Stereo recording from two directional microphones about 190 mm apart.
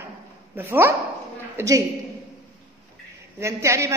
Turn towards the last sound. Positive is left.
turn(degrees=-15)  # may be behind; listen again after turning